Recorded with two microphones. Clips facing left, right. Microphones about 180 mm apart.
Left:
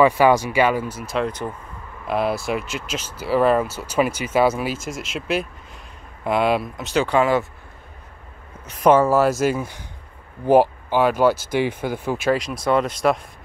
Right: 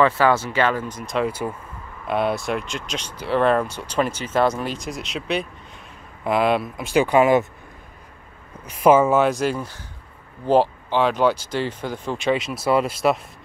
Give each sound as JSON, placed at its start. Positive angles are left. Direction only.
{"t": 0.0, "sound": "speech", "side_deg": 15}
{"t": 6.8, "sound": "speech", "side_deg": -10}
{"t": 8.8, "sound": "speech", "side_deg": -5}